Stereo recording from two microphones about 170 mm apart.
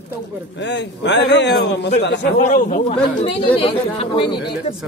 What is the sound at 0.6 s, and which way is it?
A man's voice, 90° left.